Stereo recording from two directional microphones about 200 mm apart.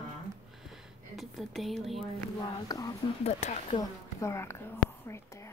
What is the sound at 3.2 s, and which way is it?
Speech, 35° left (ahead or behind).